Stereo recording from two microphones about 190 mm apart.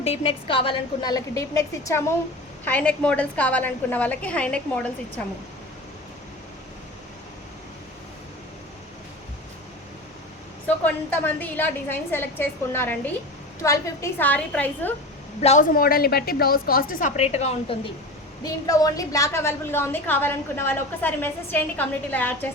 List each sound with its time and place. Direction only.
0.0 s a woman's voice: 30° left (ahead or behind); by 5.2 s 5° left (ahead or behind)
10.8 s a woman's voice: 10° left (ahead or behind)
15.4 s a woman's voice: 35° left (ahead or behind)
18.4 s a woman's voice: 20° left (ahead or behind)